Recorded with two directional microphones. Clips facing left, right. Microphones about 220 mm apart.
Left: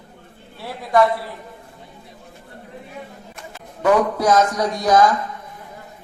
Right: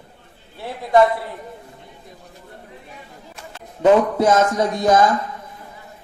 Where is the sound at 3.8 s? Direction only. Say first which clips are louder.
Right 3 dB; 25° right (ahead or behind).